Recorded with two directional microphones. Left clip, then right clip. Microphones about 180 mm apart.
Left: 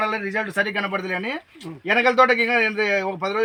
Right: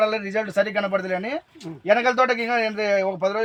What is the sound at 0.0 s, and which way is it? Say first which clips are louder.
A man's voice: right 1 dB; 35° right (ahead or behind).